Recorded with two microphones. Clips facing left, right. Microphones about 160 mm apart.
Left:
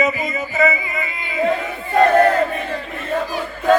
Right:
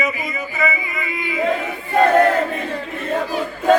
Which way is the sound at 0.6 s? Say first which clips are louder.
Left 4 dB; 25° left (ahead or behind).